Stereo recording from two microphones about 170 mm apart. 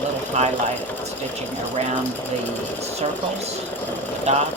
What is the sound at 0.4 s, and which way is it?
Speech, 40° right (ahead or behind).